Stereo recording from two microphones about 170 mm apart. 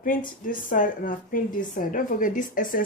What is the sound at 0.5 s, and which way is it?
A woman's voice, 50° left (ahead or behind).